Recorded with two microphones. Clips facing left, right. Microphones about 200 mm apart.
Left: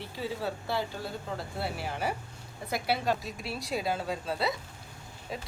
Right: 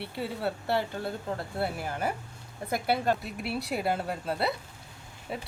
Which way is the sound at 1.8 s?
50° right (ahead or behind).